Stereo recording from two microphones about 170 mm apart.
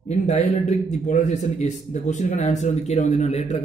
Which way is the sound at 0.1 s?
40° left (ahead or behind).